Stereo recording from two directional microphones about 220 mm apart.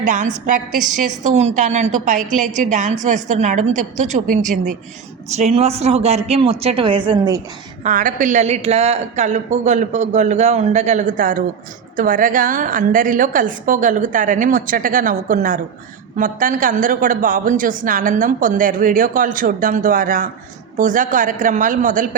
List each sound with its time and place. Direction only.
0.0 s a woman's voice: 35° right (ahead or behind)
0.7 s a woman's voice: centre (ahead or behind)
0.9 s a woman's voice: 35° right (ahead or behind)
7.9 s a woman's voice: 35° right (ahead or behind)